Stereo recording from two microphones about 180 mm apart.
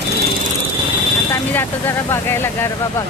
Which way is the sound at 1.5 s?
10° left (ahead or behind).